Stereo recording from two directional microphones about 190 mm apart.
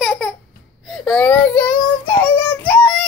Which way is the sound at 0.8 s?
5° left (ahead or behind).